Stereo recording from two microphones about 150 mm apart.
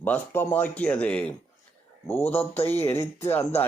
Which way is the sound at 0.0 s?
10° left (ahead or behind).